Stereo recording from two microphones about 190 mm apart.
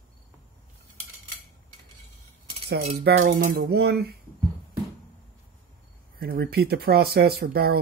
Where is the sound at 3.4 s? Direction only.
55° right (ahead or behind).